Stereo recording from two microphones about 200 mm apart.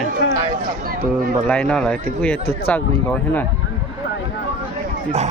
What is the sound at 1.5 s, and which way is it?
Speech, 5° left (ahead or behind).